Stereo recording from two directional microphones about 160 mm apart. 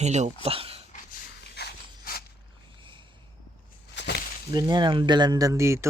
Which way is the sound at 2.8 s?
30° right (ahead or behind).